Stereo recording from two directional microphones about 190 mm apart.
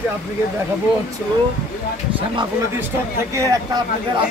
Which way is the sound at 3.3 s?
15° right (ahead or behind).